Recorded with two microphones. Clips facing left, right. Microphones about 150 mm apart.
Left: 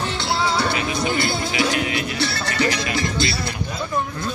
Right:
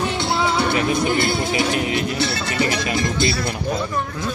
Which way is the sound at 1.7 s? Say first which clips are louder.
Right 2 dB; 50° right (ahead or behind).